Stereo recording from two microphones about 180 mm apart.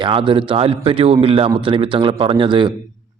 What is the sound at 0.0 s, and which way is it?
A man's voice, 25° right (ahead or behind).